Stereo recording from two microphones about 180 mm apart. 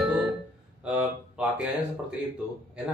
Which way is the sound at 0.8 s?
5° right (ahead or behind).